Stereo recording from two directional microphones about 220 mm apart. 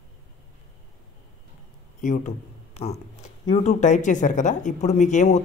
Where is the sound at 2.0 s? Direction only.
35° left (ahead or behind).